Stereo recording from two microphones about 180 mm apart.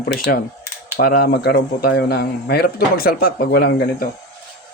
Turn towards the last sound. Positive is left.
turn(degrees=60)  # may be behind; listen again after turning